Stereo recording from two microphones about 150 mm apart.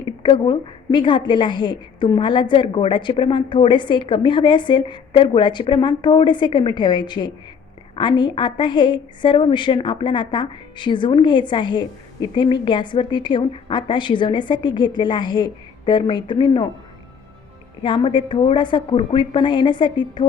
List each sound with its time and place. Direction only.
0.2 s a woman's voice: 30° left (ahead or behind)
17.8 s a woman's voice: 35° left (ahead or behind)